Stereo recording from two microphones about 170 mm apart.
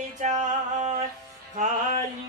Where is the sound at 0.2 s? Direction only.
45° right (ahead or behind).